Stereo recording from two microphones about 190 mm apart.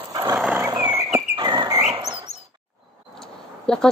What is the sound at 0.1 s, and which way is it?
Horse, 15° right (ahead or behind).